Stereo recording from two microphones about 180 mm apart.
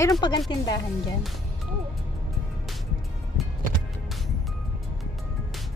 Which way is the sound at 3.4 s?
Centre (ahead or behind).